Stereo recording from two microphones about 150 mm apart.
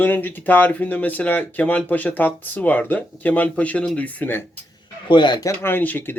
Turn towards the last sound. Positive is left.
turn(degrees=10)  # may be behind; listen again after turning